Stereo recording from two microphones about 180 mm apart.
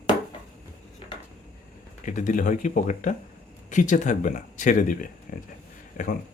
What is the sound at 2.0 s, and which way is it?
Speech, 45° left (ahead or behind).